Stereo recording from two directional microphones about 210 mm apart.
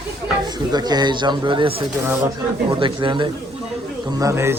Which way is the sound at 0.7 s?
20° right (ahead or behind).